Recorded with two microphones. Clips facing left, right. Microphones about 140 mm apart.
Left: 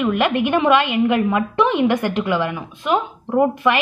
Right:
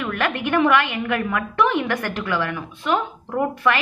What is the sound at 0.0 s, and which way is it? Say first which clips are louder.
A woman's voice: left 6 dB; 15° left (ahead or behind).